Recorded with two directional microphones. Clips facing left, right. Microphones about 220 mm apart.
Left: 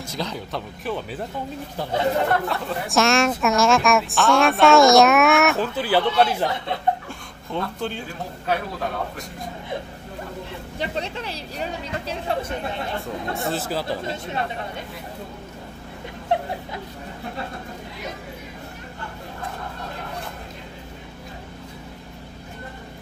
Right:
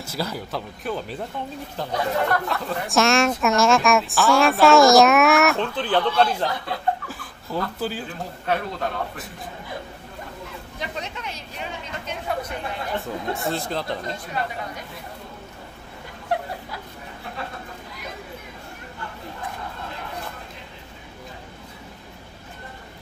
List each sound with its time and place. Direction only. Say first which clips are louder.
0.0 s speech: even; 5° right (ahead or behind)
1.9 s speech: left 2 dB; 25° left (ahead or behind)
2.4 s speech: left 1 dB; centre (ahead or behind)
6.2 s speech: left 1 dB; 25° left (ahead or behind)
7.1 s speech: even; 5° right (ahead or behind)
10.8 s speech: left 5 dB; 30° left (ahead or behind)
13.3 s speech: even; centre (ahead or behind)
14.1 s speech: left 2 dB; 25° left (ahead or behind)